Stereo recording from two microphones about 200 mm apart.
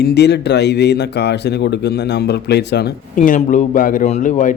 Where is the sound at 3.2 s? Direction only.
40° left (ahead or behind).